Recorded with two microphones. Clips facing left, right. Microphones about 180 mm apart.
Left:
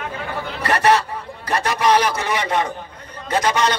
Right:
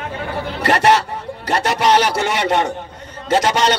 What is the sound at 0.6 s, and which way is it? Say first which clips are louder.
A man's voice: right 2 dB; 80° right.